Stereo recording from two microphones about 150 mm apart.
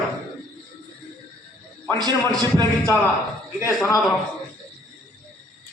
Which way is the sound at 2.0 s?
25° right (ahead or behind).